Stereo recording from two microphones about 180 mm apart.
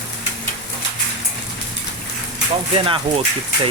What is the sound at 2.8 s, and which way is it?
Speech, 30° right (ahead or behind).